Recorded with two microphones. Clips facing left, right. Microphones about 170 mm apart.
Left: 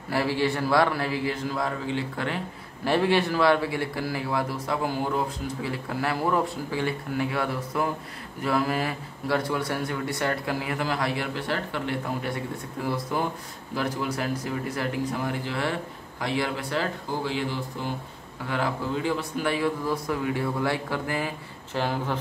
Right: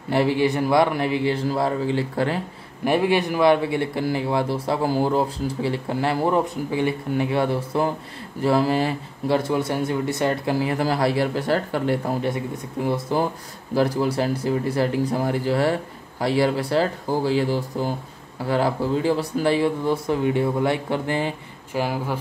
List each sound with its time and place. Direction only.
0.1 s speech: 20° right (ahead or behind); by 2.4 s 35° right (ahead or behind)
2.8 s speech: 15° right (ahead or behind); by 11.9 s 40° right (ahead or behind)
12.8 s speech: 25° right (ahead or behind)
21.7 s speech: 10° right (ahead or behind)